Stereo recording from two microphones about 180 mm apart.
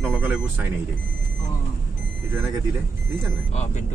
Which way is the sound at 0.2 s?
10° right (ahead or behind).